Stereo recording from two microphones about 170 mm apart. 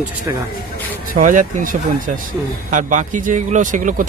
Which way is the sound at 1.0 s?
50° right (ahead or behind).